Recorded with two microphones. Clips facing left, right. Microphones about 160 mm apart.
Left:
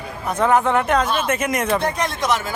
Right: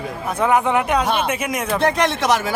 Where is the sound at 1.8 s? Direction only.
90° right.